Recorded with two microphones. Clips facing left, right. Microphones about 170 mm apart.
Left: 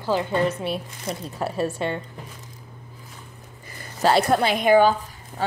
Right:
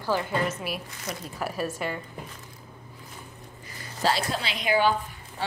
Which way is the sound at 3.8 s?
55° left (ahead or behind).